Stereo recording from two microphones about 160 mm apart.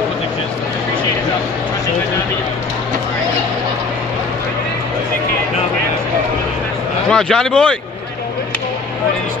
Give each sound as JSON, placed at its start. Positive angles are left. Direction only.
{"t": 7.1, "sound": "speech", "side_deg": 5}